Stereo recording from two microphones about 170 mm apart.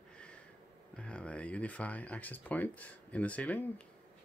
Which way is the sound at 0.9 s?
5° left (ahead or behind).